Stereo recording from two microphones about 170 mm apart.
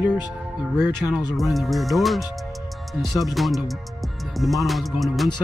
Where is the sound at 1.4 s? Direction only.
Centre (ahead or behind).